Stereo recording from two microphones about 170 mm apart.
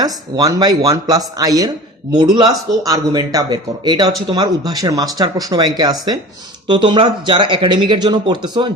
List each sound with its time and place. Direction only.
0.0 s speech: 25° right (ahead or behind)